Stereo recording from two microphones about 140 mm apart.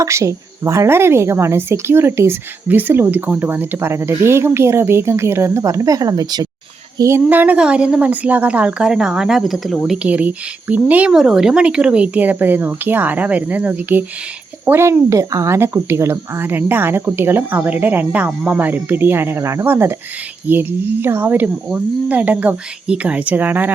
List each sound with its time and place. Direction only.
0.0 s a woman's voice: 20° right (ahead or behind)
7.0 s a woman's voice: 15° right (ahead or behind)